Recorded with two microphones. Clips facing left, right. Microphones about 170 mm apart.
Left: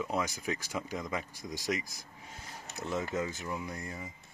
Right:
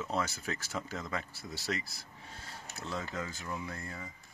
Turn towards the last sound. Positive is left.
turn(degrees=20)  # may be behind; listen again after turning